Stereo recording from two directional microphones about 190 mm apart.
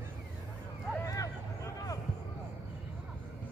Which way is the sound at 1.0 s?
20° left (ahead or behind).